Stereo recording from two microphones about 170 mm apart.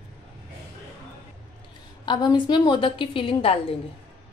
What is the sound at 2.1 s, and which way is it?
A woman's voice, 25° left (ahead or behind).